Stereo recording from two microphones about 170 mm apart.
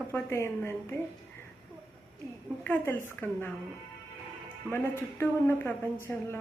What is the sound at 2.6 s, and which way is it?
Speech, 10° left (ahead or behind).